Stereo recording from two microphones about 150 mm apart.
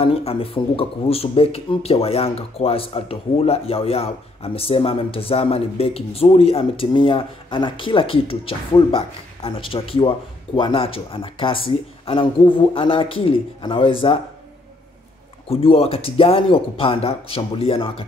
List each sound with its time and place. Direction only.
0.0 s speech: 40° left (ahead or behind)
15.4 s speech: 40° left (ahead or behind)